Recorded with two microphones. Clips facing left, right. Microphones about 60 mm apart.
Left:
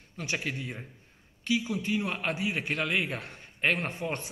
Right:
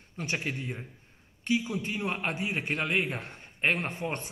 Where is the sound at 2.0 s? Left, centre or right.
Centre.